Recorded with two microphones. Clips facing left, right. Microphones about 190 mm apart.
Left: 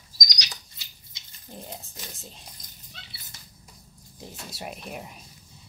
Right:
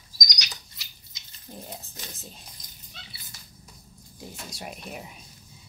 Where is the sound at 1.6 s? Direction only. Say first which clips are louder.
Left 1 dB; centre (ahead or behind).